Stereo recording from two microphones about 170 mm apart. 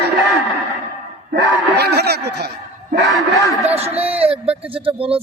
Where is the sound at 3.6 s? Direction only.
35° right (ahead or behind).